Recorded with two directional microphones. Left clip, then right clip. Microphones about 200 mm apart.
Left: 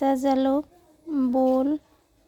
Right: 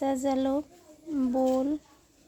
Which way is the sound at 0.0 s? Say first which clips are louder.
Left 6 dB; 25° left (ahead or behind).